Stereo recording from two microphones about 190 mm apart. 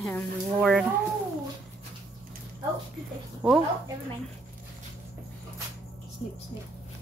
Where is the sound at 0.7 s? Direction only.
5° right (ahead or behind).